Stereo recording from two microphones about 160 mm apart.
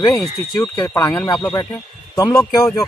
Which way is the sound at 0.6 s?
20° left (ahead or behind).